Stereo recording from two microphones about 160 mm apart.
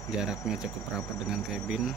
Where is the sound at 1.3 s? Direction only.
5° right (ahead or behind).